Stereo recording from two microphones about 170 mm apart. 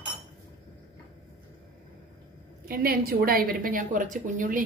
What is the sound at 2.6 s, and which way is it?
A woman's voice, 60° right (ahead or behind).